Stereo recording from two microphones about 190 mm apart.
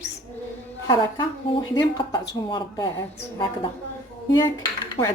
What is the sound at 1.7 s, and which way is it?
Speech, 25° left (ahead or behind).